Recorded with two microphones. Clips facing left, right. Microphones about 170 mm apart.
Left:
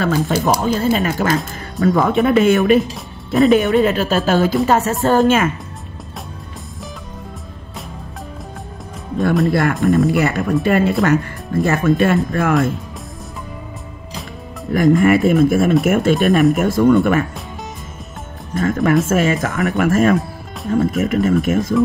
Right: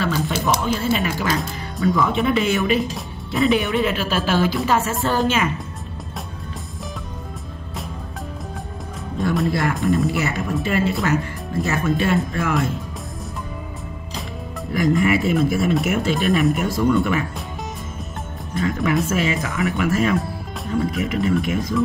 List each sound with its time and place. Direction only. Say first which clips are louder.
0.0 s speech: left 5 dB; 45° left (ahead or behind)
4.6 s music: left 4 dB; 40° left (ahead or behind)
5.0 s speech: left 6 dB; 45° left (ahead or behind)
9.5 s speech: left 5 dB; 55° left (ahead or behind)
14.7 s speech: left 6 dB; 50° left (ahead or behind)
18.6 s speech: left 5 dB; 50° left (ahead or behind)